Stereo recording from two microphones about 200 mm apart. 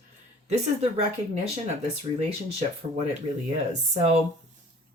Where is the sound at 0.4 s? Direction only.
30° right (ahead or behind).